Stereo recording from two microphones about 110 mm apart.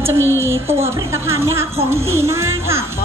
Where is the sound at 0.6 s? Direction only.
25° right (ahead or behind).